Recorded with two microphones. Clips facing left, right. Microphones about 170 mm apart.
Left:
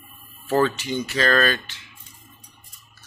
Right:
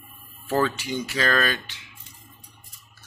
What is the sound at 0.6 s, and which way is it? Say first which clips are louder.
Speech: left 3 dB; 10° right (ahead or behind).